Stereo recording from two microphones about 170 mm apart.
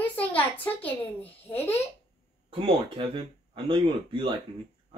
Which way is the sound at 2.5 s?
30° right (ahead or behind).